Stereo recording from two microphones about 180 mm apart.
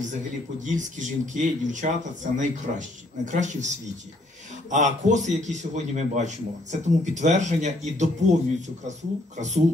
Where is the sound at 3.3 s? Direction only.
40° right (ahead or behind).